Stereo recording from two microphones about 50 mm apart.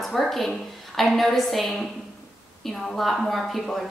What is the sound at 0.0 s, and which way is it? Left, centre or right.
A woman's voice, centre.